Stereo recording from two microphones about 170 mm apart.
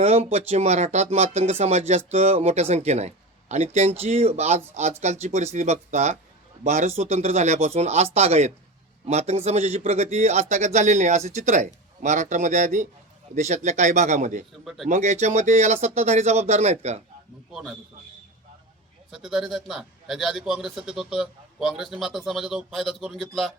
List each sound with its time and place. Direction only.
0.0 s a man's voice: 35° right (ahead or behind)
14.6 s a man's voice: centre (ahead or behind)
14.8 s speech: 45° right (ahead or behind)
17.5 s a man's voice: 5° right (ahead or behind)
19.1 s a man's voice: 5° right (ahead or behind)